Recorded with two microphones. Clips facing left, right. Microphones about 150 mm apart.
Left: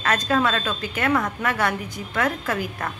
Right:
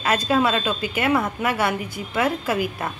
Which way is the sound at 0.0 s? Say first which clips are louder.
Right 2 dB; 10° right (ahead or behind).